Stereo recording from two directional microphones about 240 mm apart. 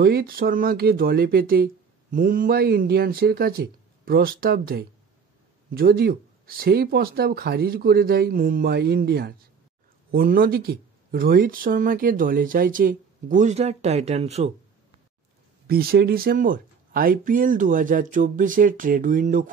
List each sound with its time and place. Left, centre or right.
0.0 s speech: right
15.6 s speech: right